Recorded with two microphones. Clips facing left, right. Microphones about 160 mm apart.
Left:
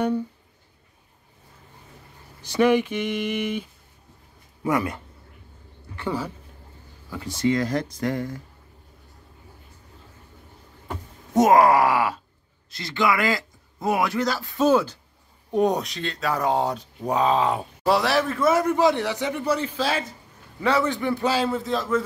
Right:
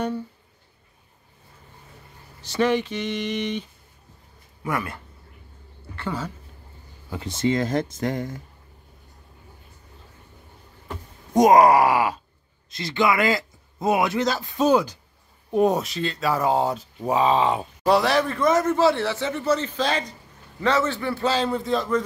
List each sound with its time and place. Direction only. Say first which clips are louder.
2.4 s a man's voice: left 3 dB; 10° left (ahead or behind)
4.6 s speech: left 4 dB; 20° left (ahead or behind)
7.1 s speech: even; 20° right (ahead or behind)
11.3 s a man's voice: right 2 dB; 15° right (ahead or behind)
15.5 s a man's voice: right 1 dB; 5° right (ahead or behind)